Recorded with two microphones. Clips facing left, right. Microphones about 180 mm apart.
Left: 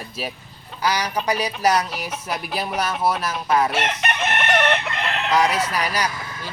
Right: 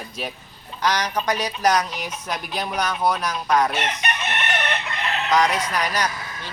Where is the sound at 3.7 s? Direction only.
90° left.